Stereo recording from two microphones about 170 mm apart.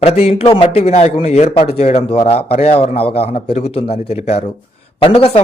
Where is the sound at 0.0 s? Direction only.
35° left (ahead or behind).